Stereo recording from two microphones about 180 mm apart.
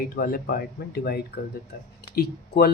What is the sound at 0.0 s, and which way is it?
Speech, 55° left (ahead or behind).